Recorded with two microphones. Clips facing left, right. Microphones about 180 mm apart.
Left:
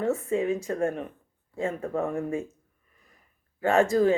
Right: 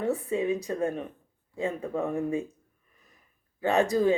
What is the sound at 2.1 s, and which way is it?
Speech, 15° right (ahead or behind).